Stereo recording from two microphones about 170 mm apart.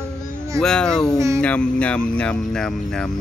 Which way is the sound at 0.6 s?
5° left (ahead or behind).